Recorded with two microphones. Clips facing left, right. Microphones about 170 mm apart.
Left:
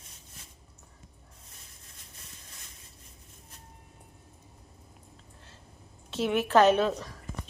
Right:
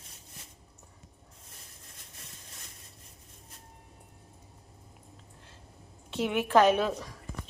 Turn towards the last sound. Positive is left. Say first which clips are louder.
# left 1 dB
turn(degrees=-10)  # may be behind; listen again after turning